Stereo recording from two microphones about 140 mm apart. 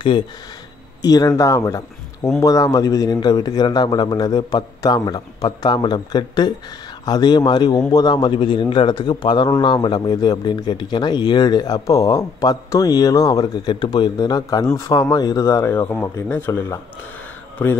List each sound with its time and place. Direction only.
1.0 s a man's voice: 25° left (ahead or behind)